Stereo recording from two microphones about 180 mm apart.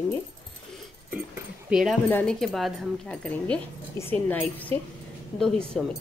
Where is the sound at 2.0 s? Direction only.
10° left (ahead or behind).